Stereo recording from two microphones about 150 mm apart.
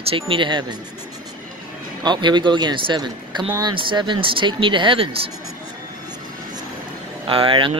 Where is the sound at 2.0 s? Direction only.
30° right (ahead or behind).